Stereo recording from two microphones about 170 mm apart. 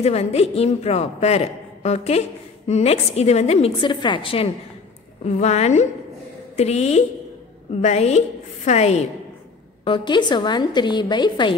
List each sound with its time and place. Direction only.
0.0 s a woman's voice: 35° left (ahead or behind)
9.8 s a woman's voice: 30° left (ahead or behind)